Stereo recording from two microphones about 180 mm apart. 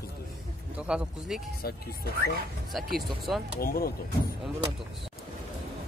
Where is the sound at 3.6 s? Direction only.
55° left (ahead or behind).